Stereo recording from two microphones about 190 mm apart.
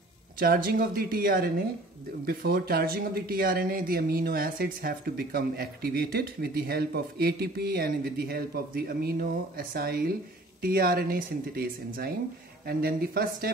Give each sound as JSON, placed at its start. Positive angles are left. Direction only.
{"t": 0.4, "sound": "speech", "side_deg": -50}